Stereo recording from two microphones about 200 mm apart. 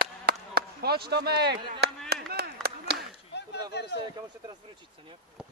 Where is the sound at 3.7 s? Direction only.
55° left (ahead or behind).